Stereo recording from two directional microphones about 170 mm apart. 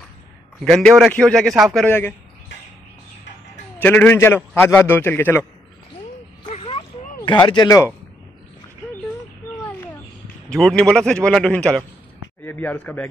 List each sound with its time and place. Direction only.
0.7 s a man's voice: centre (ahead or behind)
1.9 s a man's voice: 10° left (ahead or behind)
3.8 s a man's voice: 10° left (ahead or behind)
6.4 s a sound: 30° left (ahead or behind)
10.5 s a man's voice: centre (ahead or behind)